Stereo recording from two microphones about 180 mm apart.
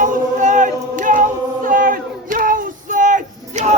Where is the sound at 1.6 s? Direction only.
50° right (ahead or behind).